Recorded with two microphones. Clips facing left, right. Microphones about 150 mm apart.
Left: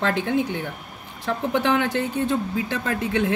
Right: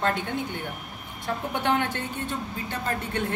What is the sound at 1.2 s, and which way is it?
Speech, 90° left.